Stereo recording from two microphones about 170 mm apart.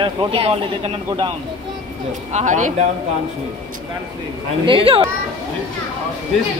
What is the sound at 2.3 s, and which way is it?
Speech, 45° right (ahead or behind).